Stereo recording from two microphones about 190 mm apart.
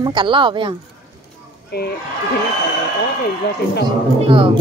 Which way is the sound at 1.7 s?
60° left (ahead or behind).